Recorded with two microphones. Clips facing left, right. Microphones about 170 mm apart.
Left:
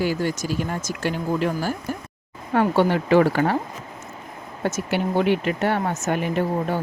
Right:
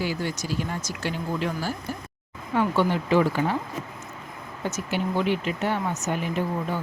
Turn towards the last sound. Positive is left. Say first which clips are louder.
# left 4 dB
turn(degrees=60)  # may be behind; listen again after turning